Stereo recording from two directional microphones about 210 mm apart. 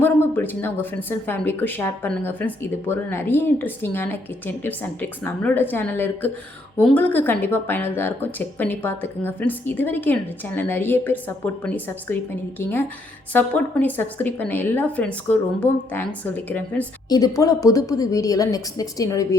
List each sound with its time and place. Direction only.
0.0 s speech: 10° left (ahead or behind)